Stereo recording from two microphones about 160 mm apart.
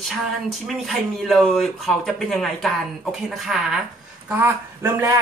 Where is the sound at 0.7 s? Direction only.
Centre (ahead or behind).